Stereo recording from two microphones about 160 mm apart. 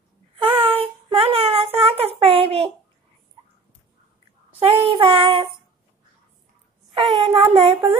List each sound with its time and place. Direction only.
0.4 s a sound: 35° right (ahead or behind)
4.6 s child singing: 40° right (ahead or behind)
6.9 s child singing: 30° right (ahead or behind)